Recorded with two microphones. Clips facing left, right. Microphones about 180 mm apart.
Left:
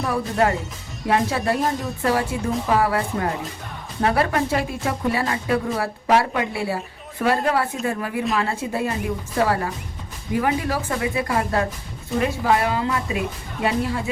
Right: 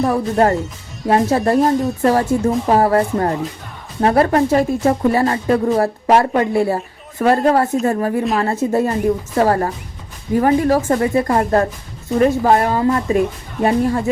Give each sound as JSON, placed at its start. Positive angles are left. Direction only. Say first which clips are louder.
{"t": 0.0, "sound": "a woman's voice", "louder": "right 6 dB", "side_deg": -40}